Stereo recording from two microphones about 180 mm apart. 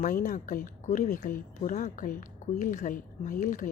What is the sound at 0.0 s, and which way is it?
A woman's voice, 45° left (ahead or behind).